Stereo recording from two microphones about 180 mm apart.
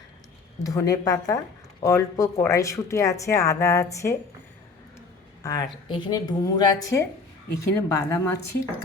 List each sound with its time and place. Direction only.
0.6 s a woman's voice: 20° left (ahead or behind)